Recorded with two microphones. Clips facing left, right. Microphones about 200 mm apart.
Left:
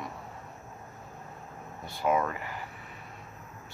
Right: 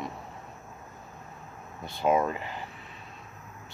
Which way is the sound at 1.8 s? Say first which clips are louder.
Right 3 dB; 20° right (ahead or behind).